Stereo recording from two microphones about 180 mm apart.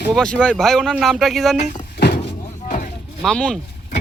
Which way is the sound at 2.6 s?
45° left (ahead or behind).